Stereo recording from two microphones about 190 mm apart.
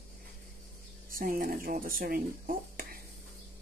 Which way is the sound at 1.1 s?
50° right (ahead or behind).